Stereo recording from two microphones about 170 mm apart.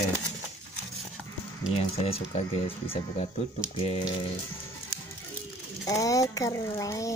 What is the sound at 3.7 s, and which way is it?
Speech, 35° left (ahead or behind).